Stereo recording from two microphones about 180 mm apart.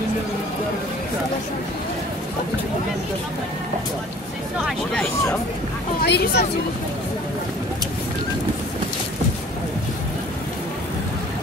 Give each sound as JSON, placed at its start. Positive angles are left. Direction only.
{"t": 6.0, "sound": "speech", "side_deg": 65}